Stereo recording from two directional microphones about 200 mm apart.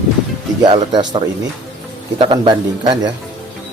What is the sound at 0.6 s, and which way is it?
Speech, 25° right (ahead or behind).